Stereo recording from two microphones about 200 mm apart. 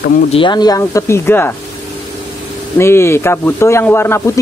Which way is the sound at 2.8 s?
10° left (ahead or behind).